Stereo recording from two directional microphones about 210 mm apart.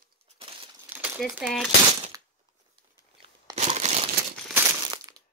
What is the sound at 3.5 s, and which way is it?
Crumpling, 35° right (ahead or behind).